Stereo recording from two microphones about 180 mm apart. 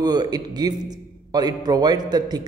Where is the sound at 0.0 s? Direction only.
20° right (ahead or behind).